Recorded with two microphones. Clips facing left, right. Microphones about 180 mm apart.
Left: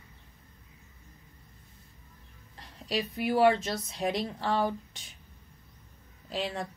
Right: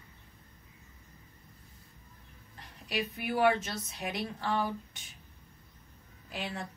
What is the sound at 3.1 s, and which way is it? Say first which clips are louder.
A woman's voice: left 4 dB; 30° left (ahead or behind).